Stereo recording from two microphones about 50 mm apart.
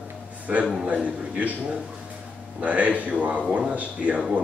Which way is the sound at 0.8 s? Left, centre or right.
Right.